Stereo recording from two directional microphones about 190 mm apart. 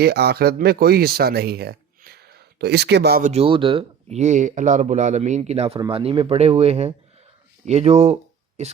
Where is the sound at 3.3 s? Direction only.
30° right (ahead or behind).